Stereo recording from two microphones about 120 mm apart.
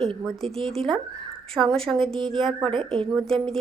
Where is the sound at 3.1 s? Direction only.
Centre (ahead or behind).